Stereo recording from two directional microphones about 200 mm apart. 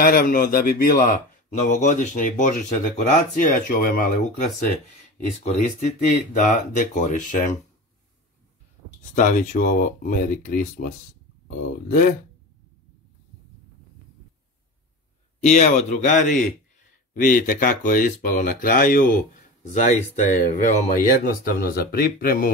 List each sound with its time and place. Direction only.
0.0 s speech: 45° left (ahead or behind)
9.1 s speech: 40° left (ahead or behind)
11.9 s speech: 40° left (ahead or behind)
15.4 s speech: 35° left (ahead or behind)